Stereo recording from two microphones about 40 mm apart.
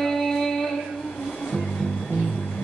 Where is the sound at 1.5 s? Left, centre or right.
Centre.